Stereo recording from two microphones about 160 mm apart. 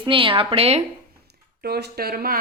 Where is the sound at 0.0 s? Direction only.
35° right (ahead or behind).